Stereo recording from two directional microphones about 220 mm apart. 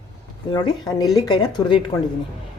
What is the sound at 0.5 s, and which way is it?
A woman's voice, 20° left (ahead or behind).